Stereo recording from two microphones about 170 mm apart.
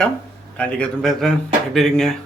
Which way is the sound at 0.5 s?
5° left (ahead or behind).